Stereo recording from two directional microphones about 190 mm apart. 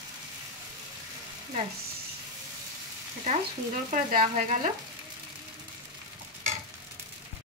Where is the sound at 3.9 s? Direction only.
45° right (ahead or behind).